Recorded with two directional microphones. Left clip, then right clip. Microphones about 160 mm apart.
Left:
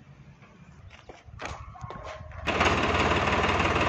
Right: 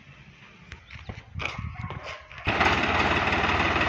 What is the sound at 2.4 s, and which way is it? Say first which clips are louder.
Lawn mower: right 2 dB; 40° left (ahead or behind).